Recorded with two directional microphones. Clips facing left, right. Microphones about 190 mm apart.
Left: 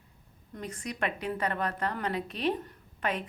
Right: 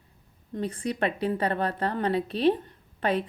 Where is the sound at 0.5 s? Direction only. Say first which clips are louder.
Right 8 dB; 30° right (ahead or behind).